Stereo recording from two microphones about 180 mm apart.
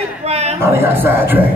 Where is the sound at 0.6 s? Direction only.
15° right (ahead or behind).